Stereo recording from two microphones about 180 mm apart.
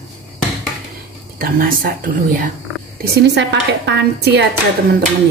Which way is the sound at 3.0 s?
65° right (ahead or behind).